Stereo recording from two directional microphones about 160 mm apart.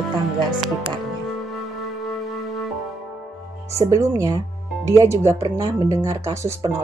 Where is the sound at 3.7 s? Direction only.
20° right (ahead or behind).